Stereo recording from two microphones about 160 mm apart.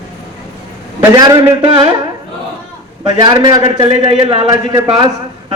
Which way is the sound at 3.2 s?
30° right (ahead or behind).